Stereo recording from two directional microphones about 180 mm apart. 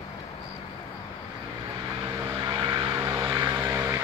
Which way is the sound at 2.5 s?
25° right (ahead or behind).